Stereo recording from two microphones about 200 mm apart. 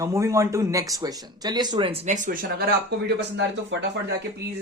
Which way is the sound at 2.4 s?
55° right (ahead or behind).